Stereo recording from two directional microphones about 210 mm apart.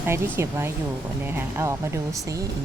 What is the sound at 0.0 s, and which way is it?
Speech, 10° right (ahead or behind).